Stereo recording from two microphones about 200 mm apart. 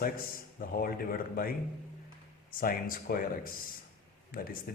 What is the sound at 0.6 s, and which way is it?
Speech, 45° left (ahead or behind).